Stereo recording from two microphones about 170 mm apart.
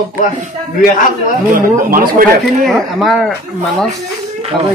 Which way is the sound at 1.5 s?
55° right (ahead or behind).